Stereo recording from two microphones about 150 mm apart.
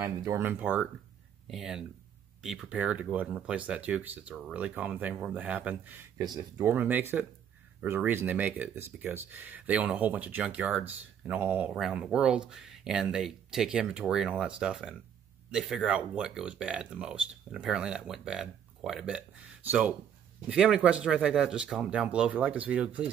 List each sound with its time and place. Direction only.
0.0 s speech: 25° right (ahead or behind)
0.4 s speech: 10° right (ahead or behind)